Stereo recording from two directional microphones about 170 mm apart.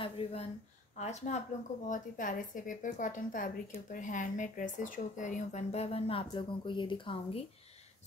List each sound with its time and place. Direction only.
0.0 s a woman's voice: 35° left (ahead or behind)